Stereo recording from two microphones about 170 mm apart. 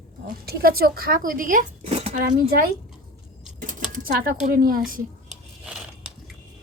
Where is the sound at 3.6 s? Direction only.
50° right (ahead or behind).